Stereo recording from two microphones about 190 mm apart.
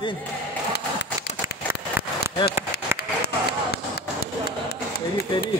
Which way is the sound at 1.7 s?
15° right (ahead or behind).